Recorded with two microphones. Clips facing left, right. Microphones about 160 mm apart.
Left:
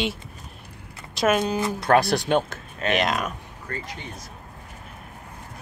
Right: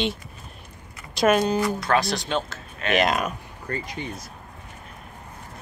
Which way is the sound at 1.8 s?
55° left (ahead or behind).